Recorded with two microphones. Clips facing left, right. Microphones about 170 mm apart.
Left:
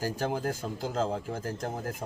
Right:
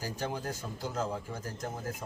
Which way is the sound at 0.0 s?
50° left (ahead or behind).